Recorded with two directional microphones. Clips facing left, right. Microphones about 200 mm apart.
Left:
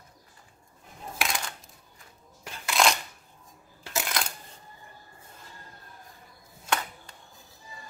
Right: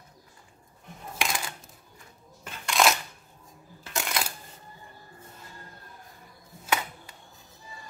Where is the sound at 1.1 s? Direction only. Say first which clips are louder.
Right 1 dB; centre (ahead or behind).